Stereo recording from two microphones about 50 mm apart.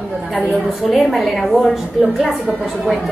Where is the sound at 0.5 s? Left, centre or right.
Centre.